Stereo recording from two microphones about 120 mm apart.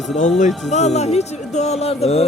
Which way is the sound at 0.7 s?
70° left (ahead or behind).